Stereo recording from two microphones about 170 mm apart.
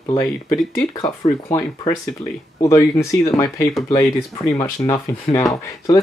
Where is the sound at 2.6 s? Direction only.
20° left (ahead or behind).